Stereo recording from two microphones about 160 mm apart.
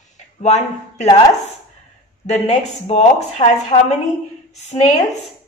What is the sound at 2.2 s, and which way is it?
Speech, 45° left (ahead or behind).